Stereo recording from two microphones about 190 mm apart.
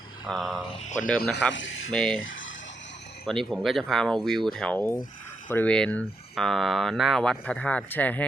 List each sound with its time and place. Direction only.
0.3 s speech: centre (ahead or behind)
1.5 s speech: 85° left
1.9 s speech: 5° left (ahead or behind)
2.2 s a sound: 90° left
3.2 s speech: centre (ahead or behind)